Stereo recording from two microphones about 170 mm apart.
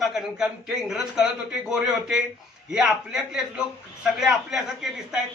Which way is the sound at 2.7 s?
5° right (ahead or behind).